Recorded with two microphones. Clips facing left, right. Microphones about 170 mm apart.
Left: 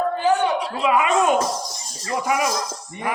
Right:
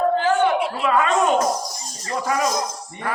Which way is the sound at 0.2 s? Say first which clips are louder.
Right 1 dB; 15° left (ahead or behind).